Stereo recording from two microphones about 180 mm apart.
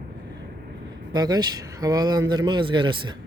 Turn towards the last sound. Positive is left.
turn(degrees=-25)  # may be behind; listen again after turning